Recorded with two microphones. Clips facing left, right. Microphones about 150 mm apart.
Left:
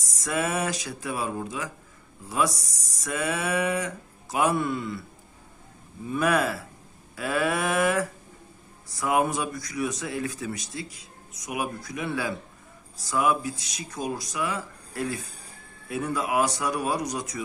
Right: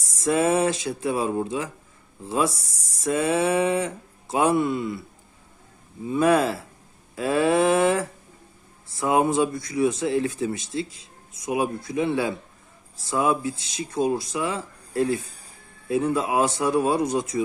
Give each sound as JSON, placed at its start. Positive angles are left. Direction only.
{"t": 0.0, "sound": "speech", "side_deg": -25}
{"t": 6.1, "sound": "speech", "side_deg": -30}